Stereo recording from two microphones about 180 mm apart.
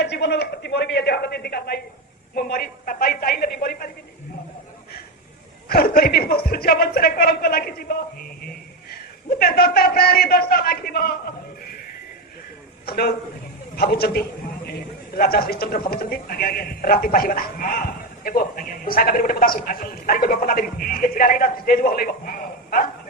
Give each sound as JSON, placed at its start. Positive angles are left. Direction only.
{"t": 0.0, "sound": "a man's voice", "side_deg": 70}
{"t": 5.6, "sound": "speech", "side_deg": 55}
{"t": 9.4, "sound": "speech", "side_deg": 55}
{"t": 12.8, "sound": "a man's voice", "side_deg": 60}